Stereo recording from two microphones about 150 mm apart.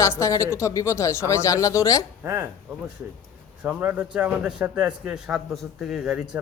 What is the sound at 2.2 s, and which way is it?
Speech, 20° right (ahead or behind).